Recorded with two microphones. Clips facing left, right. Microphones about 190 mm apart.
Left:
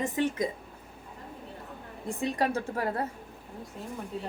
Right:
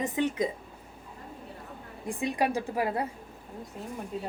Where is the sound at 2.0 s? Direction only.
10° right (ahead or behind).